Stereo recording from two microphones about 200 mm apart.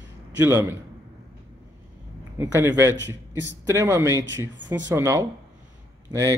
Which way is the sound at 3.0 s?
65° right (ahead or behind).